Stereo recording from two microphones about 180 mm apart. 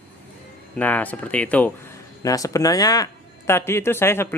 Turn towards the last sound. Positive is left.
turn(degrees=15)  # may be behind; listen again after turning